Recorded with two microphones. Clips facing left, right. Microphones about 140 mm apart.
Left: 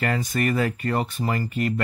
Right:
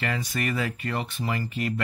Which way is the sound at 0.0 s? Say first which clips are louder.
Left 5 dB; 45° left (ahead or behind).